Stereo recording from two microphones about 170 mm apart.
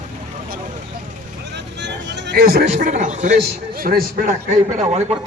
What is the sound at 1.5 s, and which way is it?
Vehicle, 90° right.